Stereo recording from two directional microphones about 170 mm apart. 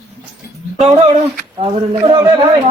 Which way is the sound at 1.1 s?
40° right (ahead or behind).